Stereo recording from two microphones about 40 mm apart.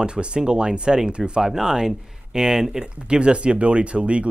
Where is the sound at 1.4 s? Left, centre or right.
Centre.